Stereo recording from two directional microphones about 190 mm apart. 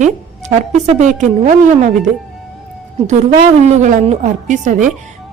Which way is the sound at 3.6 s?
40° right (ahead or behind).